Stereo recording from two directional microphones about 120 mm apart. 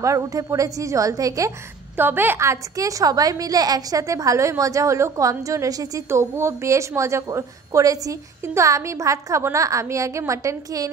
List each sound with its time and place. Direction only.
0.0 s a woman's voice: 25° right (ahead or behind)
2.0 s a woman's voice: 15° right (ahead or behind)